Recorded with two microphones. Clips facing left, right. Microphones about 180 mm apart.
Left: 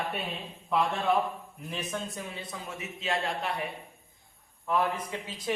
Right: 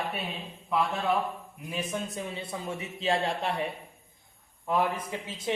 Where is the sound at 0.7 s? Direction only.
Centre (ahead or behind).